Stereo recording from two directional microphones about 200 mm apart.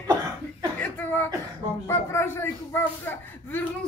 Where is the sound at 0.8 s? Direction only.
10° left (ahead or behind).